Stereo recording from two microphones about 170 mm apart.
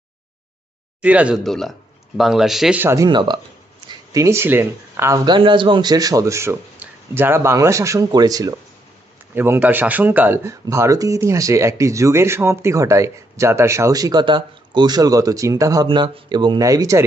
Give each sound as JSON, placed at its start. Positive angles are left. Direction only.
{"t": 1.0, "sound": "speech", "side_deg": -5}